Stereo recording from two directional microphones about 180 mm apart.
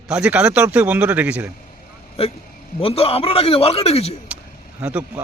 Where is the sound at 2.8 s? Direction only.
35° left (ahead or behind).